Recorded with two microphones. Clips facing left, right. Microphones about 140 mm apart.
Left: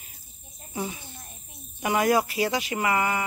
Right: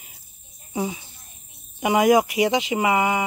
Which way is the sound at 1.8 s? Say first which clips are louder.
Right 5 dB; 20° right (ahead or behind).